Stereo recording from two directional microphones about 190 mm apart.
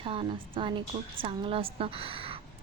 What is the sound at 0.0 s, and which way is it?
A woman's voice, 30° right (ahead or behind).